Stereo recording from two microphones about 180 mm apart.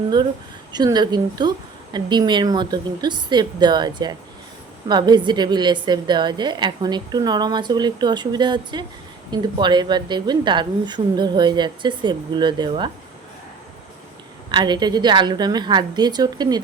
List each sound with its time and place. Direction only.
0.7 s a woman's voice: 25° right (ahead or behind)
14.5 s a woman's voice: 25° right (ahead or behind)